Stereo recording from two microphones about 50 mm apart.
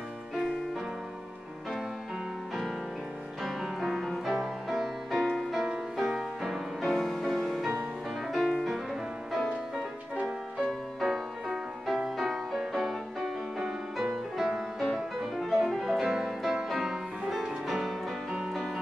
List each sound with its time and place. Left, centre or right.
3.4 s music: centre
6.8 s music: centre
10.6 s music: centre